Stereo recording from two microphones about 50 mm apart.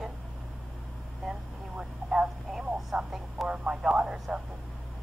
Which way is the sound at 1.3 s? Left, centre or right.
Centre.